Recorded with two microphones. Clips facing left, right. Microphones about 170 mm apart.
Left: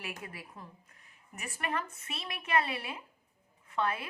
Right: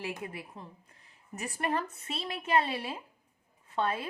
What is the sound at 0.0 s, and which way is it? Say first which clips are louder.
A woman's voice: right 5 dB; 25° right (ahead or behind).